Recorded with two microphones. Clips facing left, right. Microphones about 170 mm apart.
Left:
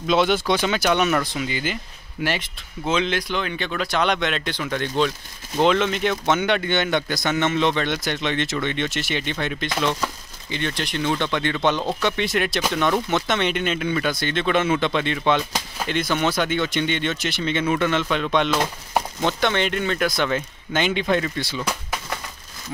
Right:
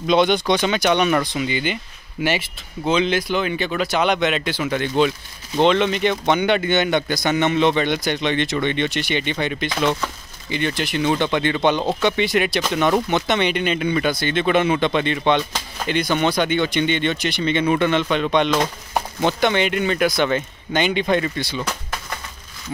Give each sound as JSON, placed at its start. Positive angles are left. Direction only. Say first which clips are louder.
{"t": 0.0, "sound": "speech", "louder": "right 2 dB", "side_deg": 0}